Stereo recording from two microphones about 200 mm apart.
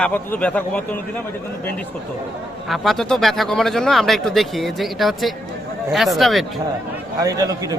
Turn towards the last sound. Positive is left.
turn(degrees=-15)  # may be behind; listen again after turning